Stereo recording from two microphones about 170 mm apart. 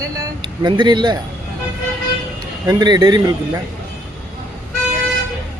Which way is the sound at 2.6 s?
25° right (ahead or behind).